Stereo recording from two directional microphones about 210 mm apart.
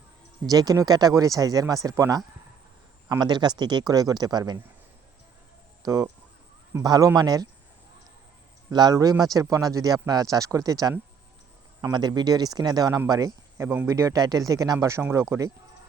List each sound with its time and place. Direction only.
0.4 s speech: 15° right (ahead or behind)
5.8 s speech: 15° right (ahead or behind)
8.7 s speech: 20° right (ahead or behind)